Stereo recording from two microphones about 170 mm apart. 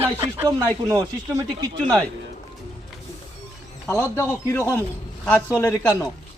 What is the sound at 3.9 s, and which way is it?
Speech, 15° left (ahead or behind).